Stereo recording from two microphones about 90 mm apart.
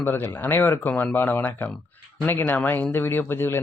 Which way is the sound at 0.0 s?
25° left (ahead or behind).